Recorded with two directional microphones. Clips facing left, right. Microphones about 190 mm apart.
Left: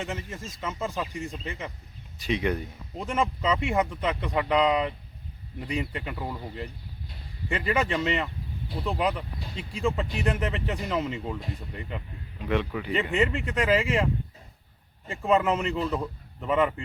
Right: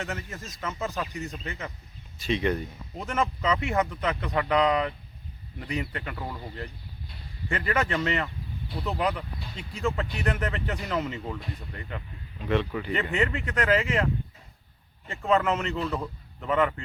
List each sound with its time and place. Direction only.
0.0 s speech: 10° left (ahead or behind)
2.1 s speech: 15° left (ahead or behind)
15.1 s a man's voice: 10° left (ahead or behind)